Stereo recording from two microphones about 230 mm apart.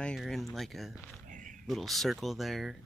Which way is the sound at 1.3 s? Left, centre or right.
Right.